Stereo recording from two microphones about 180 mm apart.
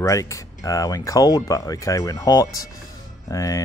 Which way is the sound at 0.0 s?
20° left (ahead or behind).